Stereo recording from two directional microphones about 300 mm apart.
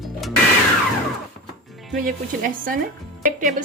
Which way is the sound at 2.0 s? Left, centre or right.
Right.